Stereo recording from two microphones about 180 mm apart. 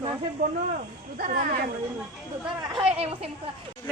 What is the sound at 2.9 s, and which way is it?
Speech, 35° right (ahead or behind).